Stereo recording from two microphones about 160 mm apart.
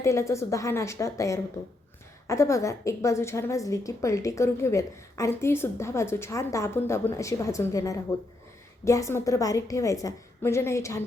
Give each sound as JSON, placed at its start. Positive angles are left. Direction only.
{"t": 0.0, "sound": "a woman's voice", "side_deg": 15}